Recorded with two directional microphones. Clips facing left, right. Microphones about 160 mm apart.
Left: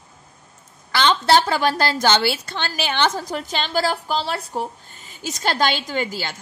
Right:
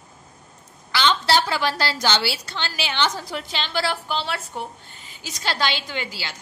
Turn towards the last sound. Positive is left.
turn(degrees=50)  # may be behind; listen again after turning